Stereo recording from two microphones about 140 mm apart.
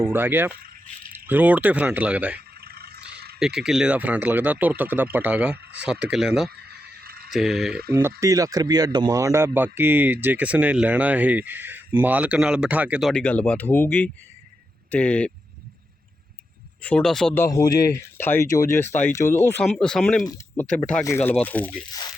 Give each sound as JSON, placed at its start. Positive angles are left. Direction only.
{"t": 0.0, "sound": "speech", "side_deg": -15}
{"t": 2.6, "sound": "a sound", "side_deg": -90}
{"t": 3.4, "sound": "speech", "side_deg": -5}
{"t": 7.0, "sound": "a sound", "side_deg": -90}
{"t": 7.3, "sound": "speech", "side_deg": 0}
{"t": 7.7, "sound": "speech", "side_deg": -90}
{"t": 7.9, "sound": "speech", "side_deg": -20}
{"t": 13.0, "sound": "speech", "side_deg": 5}
{"t": 16.8, "sound": "speech", "side_deg": 5}
{"t": 17.3, "sound": "speech", "side_deg": 20}
{"t": 19.6, "sound": "speech", "side_deg": 5}
{"t": 21.0, "sound": "speech", "side_deg": 20}